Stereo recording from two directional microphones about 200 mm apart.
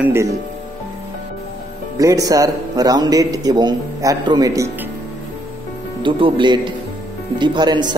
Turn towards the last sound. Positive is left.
turn(degrees=-20)  # may be behind; listen again after turning